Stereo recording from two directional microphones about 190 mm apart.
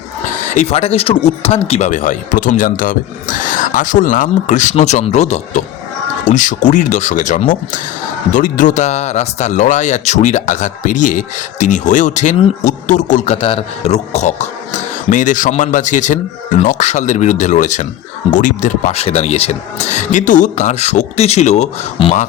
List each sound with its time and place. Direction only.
0.5 s speech: 35° left (ahead or behind)